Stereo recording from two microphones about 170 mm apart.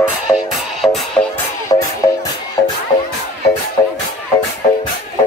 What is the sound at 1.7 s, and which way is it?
Music, 20° left (ahead or behind).